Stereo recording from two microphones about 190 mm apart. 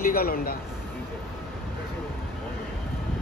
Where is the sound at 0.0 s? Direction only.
50° left (ahead or behind).